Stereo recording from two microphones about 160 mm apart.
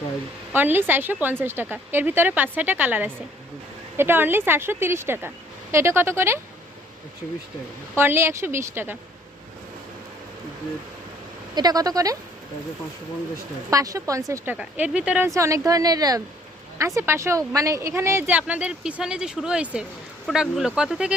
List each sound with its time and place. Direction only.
0.5 s speech: 10° right (ahead or behind)
7.9 s speech: 15° right (ahead or behind)
11.5 s a woman's voice: 25° right (ahead or behind)
13.7 s speech: 20° right (ahead or behind)
15.4 s a woman's voice: 20° right (ahead or behind)